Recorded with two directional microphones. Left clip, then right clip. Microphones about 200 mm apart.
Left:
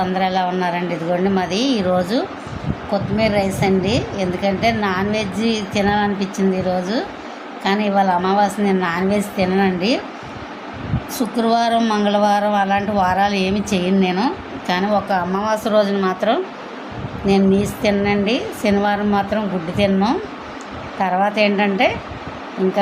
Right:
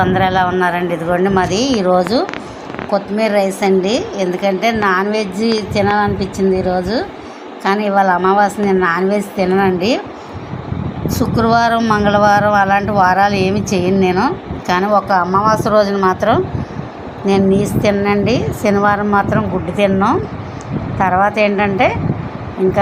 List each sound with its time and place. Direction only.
0.0 s a woman's voice: centre (ahead or behind)
11.1 s a woman's voice: 10° left (ahead or behind)
18.1 s a woman's voice: 10° right (ahead or behind)